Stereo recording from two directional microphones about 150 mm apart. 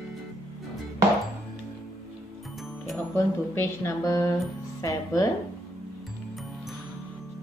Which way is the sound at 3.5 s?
20° left (ahead or behind).